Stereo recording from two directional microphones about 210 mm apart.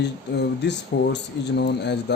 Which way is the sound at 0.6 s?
55° left (ahead or behind).